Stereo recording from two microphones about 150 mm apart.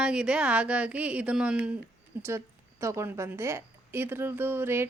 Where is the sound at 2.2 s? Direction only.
15° right (ahead or behind).